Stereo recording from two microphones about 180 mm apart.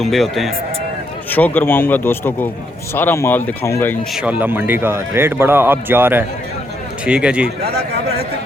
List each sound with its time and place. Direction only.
0.0 s a man's voice: centre (ahead or behind)
4.1 s speech: 5° right (ahead or behind)
7.4 s speech: 65° right (ahead or behind)